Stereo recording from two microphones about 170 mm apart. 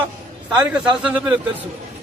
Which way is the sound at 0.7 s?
5° right (ahead or behind).